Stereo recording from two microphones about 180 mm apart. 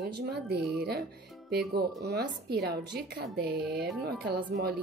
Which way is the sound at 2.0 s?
65° right (ahead or behind).